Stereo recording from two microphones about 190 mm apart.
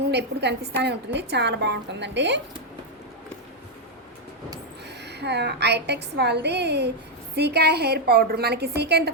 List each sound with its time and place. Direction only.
0.1 s a woman's voice: 60° right (ahead or behind)
5.0 s a woman's voice: 60° right (ahead or behind)